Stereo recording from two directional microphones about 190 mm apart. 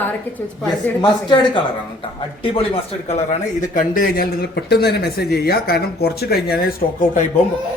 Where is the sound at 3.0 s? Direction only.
35° left (ahead or behind).